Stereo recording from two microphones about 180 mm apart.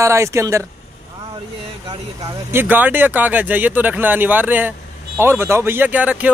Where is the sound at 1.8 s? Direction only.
15° right (ahead or behind).